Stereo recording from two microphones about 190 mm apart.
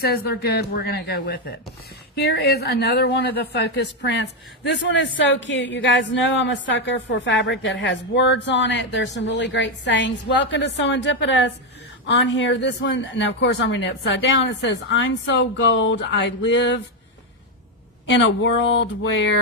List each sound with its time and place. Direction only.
0.0 s a woman's voice: 55° left (ahead or behind)
18.1 s a woman's voice: 70° left (ahead or behind)